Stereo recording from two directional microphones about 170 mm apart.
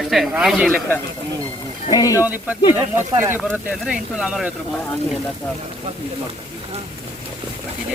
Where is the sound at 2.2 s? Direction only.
10° right (ahead or behind).